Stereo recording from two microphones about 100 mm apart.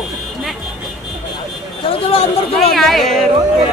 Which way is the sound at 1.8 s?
65° left (ahead or behind).